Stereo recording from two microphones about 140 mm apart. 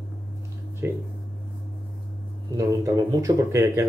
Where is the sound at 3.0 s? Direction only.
25° right (ahead or behind).